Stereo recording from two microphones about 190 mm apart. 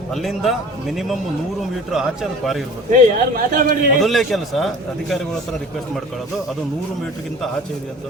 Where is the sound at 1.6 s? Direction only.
Centre (ahead or behind).